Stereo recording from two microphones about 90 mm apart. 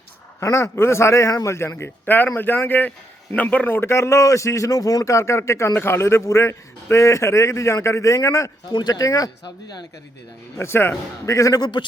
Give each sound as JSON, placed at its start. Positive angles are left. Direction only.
{"t": 0.3, "sound": "a man's voice", "side_deg": 30}
{"t": 3.8, "sound": "a man's voice", "side_deg": 30}
{"t": 10.6, "sound": "a man's voice", "side_deg": 25}